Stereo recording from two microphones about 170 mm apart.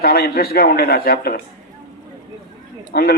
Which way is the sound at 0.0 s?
65° left (ahead or behind).